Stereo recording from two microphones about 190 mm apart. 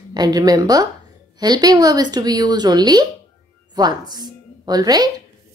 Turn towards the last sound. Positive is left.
turn(degrees=-20)  # may be behind; listen again after turning